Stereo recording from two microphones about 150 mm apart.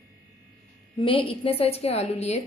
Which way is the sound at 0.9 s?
35° left (ahead or behind).